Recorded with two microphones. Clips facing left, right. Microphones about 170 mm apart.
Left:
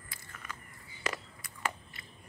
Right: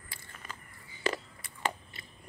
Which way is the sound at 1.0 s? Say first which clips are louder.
Right 5 dB; 30° right (ahead or behind).